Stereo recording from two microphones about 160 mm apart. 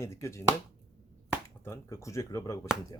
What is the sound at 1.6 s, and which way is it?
Speech, 15° left (ahead or behind).